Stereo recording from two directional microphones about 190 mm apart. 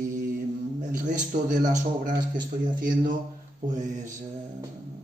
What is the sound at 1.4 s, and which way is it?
Speech, 40° right (ahead or behind).